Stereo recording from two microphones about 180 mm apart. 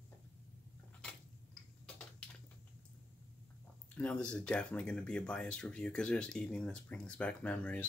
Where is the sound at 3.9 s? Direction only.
5° left (ahead or behind).